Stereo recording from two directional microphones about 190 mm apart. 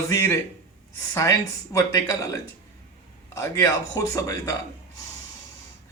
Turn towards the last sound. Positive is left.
turn(degrees=15)  # may be behind; listen again after turning